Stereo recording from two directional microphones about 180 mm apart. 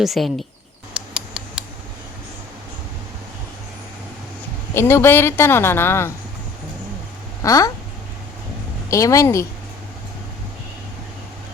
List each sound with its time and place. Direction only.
0.0 s speech: centre (ahead or behind)
0.9 s mouse: 5° right (ahead or behind)
4.7 s a woman's voice: 15° left (ahead or behind)
7.4 s speech: 15° left (ahead or behind)
8.9 s a woman's voice: 15° left (ahead or behind)